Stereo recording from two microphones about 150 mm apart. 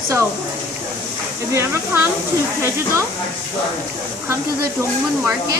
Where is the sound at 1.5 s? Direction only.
15° right (ahead or behind).